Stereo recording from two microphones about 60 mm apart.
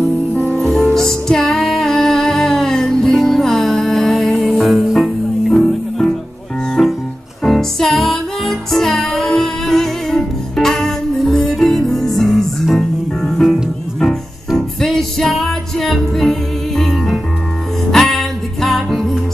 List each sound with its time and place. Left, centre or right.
0.3 s music: left
0.6 s music: centre
5.5 s music: centre